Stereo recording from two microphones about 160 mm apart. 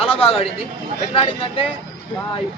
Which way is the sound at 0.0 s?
35° left (ahead or behind).